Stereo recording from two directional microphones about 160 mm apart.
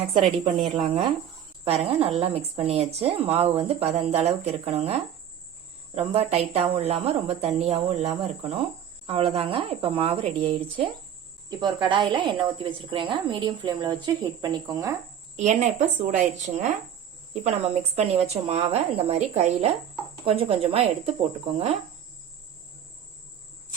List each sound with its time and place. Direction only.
0.1 s a woman's voice: 30° right (ahead or behind)
15.4 s a woman's voice: 45° right (ahead or behind)
17.4 s a woman's voice: 40° right (ahead or behind)